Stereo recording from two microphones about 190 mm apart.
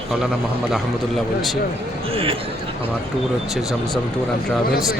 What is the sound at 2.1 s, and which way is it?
Speech, 30° right (ahead or behind).